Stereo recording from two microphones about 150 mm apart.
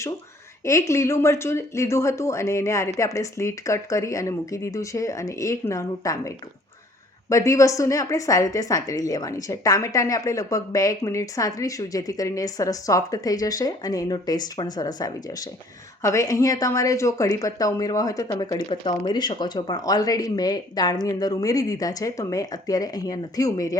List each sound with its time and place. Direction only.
0.6 s a woman's voice: 20° left (ahead or behind)